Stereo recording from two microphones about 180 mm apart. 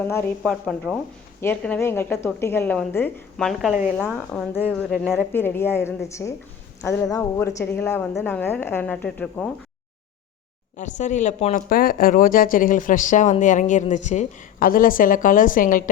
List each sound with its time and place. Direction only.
0.0 s a woman's voice: 15° left (ahead or behind)
0.4 s a woman's voice: centre (ahead or behind)
4.7 s a woman's voice: 5° left (ahead or behind)
10.8 s a woman's voice: 45° left (ahead or behind)
11.7 s a woman's voice: 55° left (ahead or behind)